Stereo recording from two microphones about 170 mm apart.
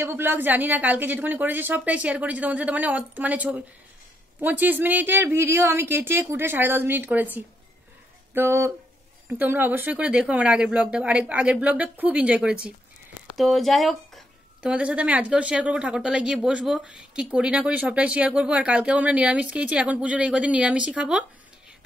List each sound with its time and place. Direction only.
0.0 s a woman's voice: 10° right (ahead or behind)